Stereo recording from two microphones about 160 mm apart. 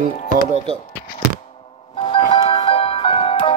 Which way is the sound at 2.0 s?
35° left (ahead or behind).